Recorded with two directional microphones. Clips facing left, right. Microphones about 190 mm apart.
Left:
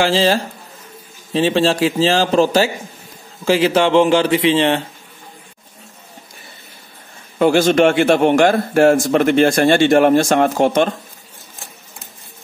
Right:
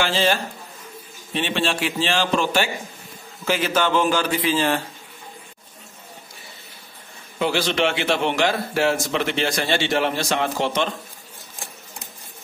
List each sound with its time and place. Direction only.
0.0 s a man's voice: 35° left (ahead or behind)
1.4 s a man's voice: 35° left (ahead or behind)
7.3 s a man's voice: 50° left (ahead or behind)